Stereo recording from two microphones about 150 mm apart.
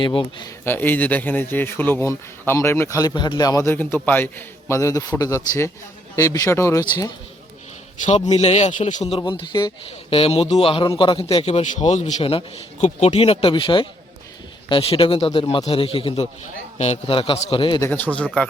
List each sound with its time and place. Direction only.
0.0 s a man's voice: 35° left (ahead or behind)
0.6 s a man's voice: 15° left (ahead or behind)
8.3 s a man's voice: 45° left (ahead or behind)
17.7 s speech: 15° left (ahead or behind)